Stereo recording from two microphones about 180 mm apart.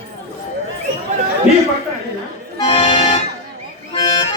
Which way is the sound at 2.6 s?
30° left (ahead or behind).